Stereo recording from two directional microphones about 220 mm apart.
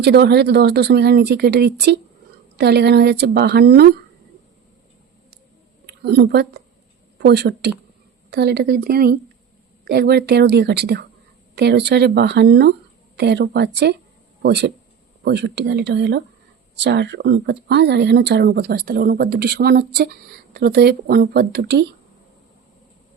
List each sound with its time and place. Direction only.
0.0 s speech: 50° right (ahead or behind)
5.8 s a woman's voice: 50° right (ahead or behind)